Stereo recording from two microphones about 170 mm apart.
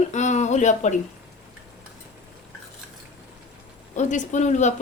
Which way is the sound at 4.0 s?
45° left (ahead or behind).